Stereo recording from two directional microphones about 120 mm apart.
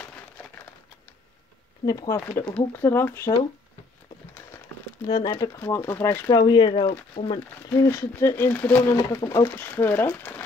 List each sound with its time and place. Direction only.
1.9 s speech: 30° left (ahead or behind)
2.1 s speech: 20° left (ahead or behind)
5.1 s speech: 35° left (ahead or behind)
5.6 s speech: 15° left (ahead or behind)
6.2 s speech: 40° left (ahead or behind)
7.7 s speech: 30° left (ahead or behind)